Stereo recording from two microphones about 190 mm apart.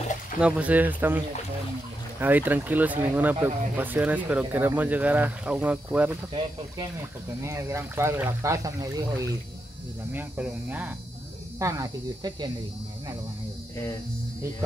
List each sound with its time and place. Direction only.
0.4 s speech: 5° right (ahead or behind)
7.4 s speech: 15° right (ahead or behind)
10.1 s speech: 10° right (ahead or behind)
11.6 s speech: 20° right (ahead or behind)